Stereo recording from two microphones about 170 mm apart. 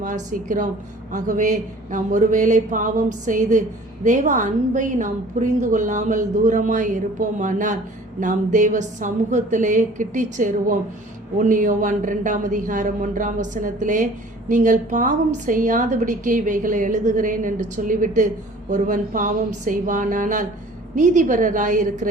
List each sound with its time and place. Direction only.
0.0 s a woman's voice: 50° right (ahead or behind)